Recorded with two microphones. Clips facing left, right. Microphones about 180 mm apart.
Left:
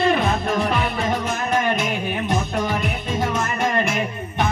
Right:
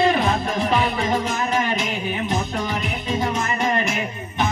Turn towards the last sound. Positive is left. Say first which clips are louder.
# left 1 dB
turn(degrees=55)  # may be behind; listen again after turning